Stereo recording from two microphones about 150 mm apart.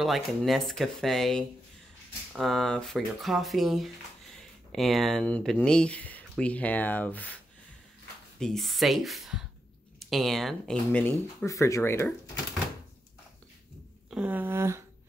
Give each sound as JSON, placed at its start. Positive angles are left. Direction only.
{"t": 0.0, "sound": "speech", "side_deg": 0}
{"t": 8.4, "sound": "speech", "side_deg": 0}
{"t": 11.4, "sound": "speech", "side_deg": 20}
{"t": 14.1, "sound": "a sound", "side_deg": -10}